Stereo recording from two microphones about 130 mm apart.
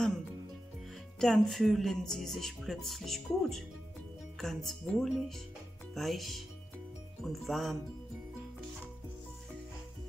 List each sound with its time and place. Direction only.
1.2 s speech: centre (ahead or behind)